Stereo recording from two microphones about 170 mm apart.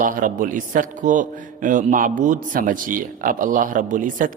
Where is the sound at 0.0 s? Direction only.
50° right (ahead or behind).